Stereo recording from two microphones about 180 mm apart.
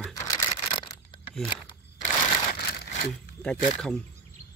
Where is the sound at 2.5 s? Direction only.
60° left (ahead or behind).